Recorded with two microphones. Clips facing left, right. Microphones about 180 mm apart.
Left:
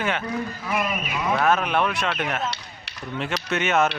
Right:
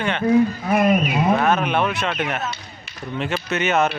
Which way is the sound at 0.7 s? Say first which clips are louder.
Right 9 dB; 55° right (ahead or behind).